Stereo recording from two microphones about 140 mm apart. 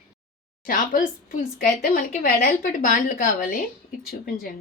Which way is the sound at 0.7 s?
75° left (ahead or behind).